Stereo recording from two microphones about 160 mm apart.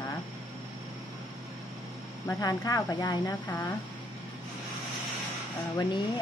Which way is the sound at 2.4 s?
20° left (ahead or behind).